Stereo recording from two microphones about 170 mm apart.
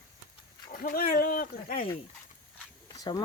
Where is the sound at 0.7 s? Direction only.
60° left (ahead or behind).